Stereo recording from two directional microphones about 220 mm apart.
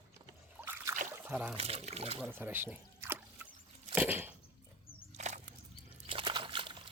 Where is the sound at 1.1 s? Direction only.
10° right (ahead or behind).